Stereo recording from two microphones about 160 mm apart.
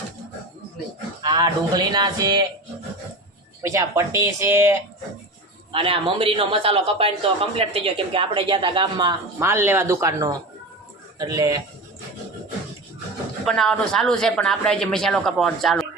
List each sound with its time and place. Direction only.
1.2 s speech: 25° right (ahead or behind)
3.6 s speech: 20° right (ahead or behind)
5.7 s a man's voice: 35° right (ahead or behind)
9.4 s speech: 15° right (ahead or behind)
13.4 s a man's voice: 5° left (ahead or behind)